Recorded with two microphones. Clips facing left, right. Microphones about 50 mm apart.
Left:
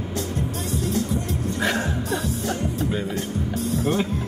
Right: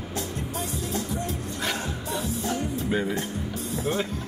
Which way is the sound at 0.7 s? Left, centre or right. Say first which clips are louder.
Left 8 dB; left.